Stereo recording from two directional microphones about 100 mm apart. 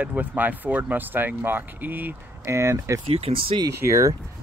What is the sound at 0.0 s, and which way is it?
Speech, 15° right (ahead or behind).